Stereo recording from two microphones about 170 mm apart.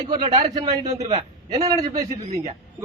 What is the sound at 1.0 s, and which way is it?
Speech, 40° right (ahead or behind).